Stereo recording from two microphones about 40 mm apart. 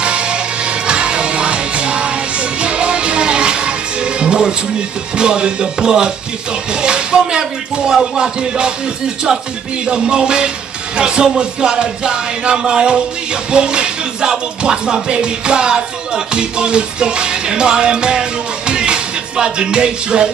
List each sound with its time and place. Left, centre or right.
0.0 s music: right
9.8 s music: centre